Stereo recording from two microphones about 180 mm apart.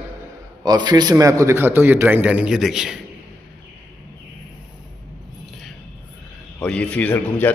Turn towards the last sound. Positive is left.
turn(degrees=10)  # may be behind; listen again after turning